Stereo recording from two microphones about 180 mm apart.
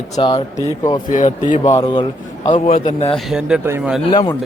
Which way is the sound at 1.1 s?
45° left (ahead or behind).